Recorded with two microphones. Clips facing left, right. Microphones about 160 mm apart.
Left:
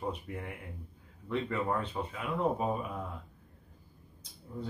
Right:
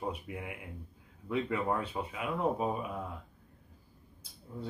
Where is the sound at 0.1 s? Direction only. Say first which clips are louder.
Left 1 dB; 5° right (ahead or behind).